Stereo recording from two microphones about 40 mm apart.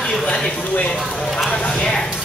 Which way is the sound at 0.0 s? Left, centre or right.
Centre.